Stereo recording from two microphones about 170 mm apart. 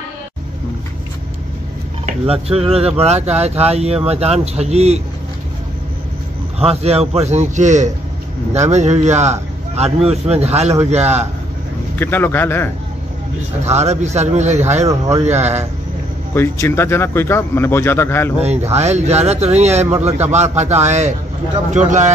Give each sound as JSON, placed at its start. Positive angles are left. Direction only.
{"t": 2.0, "sound": "speech", "side_deg": -35}
{"t": 6.6, "sound": "speech", "side_deg": -35}
{"t": 12.0, "sound": "speech", "side_deg": 15}
{"t": 13.7, "sound": "speech", "side_deg": -40}
{"t": 14.9, "sound": "speech", "side_deg": -20}
{"t": 16.3, "sound": "speech", "side_deg": 15}
{"t": 18.4, "sound": "a man's voice", "side_deg": -40}